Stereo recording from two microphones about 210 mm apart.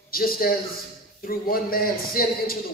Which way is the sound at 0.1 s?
45° left (ahead or behind).